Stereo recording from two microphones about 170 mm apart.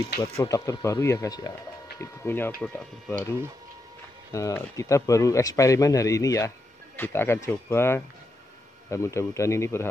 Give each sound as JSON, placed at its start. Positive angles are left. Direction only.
{"t": 0.4, "sound": "speech", "side_deg": 20}